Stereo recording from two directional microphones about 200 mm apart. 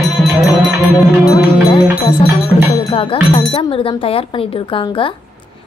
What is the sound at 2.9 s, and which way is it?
Speech, 25° left (ahead or behind).